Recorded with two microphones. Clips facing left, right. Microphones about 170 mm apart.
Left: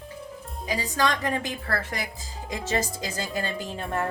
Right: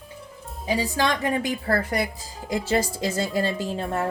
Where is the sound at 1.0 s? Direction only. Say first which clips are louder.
Left 1 dB; 10° right (ahead or behind).